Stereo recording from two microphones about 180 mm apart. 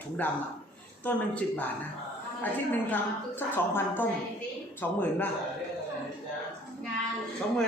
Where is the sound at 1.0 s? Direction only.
10° left (ahead or behind).